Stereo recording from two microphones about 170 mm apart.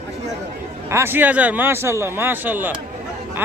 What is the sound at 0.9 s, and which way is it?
Speech, 15° right (ahead or behind).